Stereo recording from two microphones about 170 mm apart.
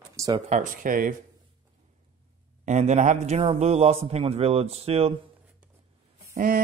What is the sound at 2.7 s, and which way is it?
A man's voice, 45° right (ahead or behind).